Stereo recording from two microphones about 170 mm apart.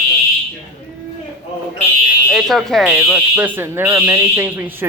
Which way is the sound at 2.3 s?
Centre (ahead or behind).